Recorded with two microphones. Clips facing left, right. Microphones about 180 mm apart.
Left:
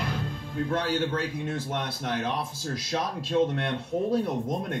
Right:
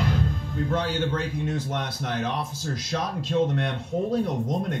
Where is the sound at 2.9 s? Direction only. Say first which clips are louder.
Right 1 dB; 30° left (ahead or behind).